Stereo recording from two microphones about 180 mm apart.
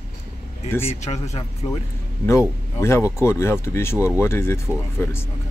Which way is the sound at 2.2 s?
15° left (ahead or behind).